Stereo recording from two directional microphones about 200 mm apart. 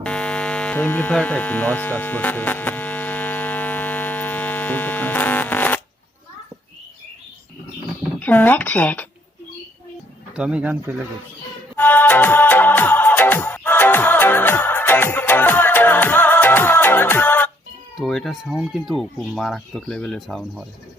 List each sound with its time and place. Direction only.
0.0 s a sound: 5° left (ahead or behind)
8.2 s speech: 10° left (ahead or behind)
10.3 s speech: 5° right (ahead or behind)
11.8 s music: 10° left (ahead or behind)
17.9 s speech: centre (ahead or behind)